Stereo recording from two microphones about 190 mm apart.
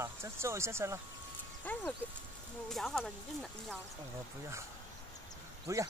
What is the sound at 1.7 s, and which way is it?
Speech, 10° left (ahead or behind).